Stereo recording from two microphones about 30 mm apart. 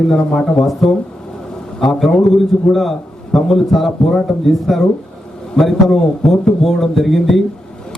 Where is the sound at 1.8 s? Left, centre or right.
Centre.